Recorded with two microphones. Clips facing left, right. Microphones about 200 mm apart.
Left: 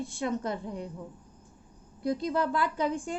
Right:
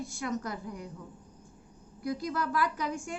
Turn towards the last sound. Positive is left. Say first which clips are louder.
# left 5 dB
turn(degrees=30)  # may be behind; listen again after turning